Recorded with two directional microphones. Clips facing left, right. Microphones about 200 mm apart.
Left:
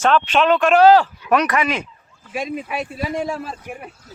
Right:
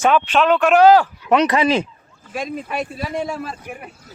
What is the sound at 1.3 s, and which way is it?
Speech, 25° right (ahead or behind).